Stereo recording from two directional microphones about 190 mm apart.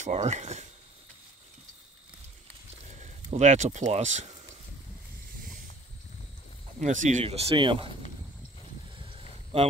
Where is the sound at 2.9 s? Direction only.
40° right (ahead or behind).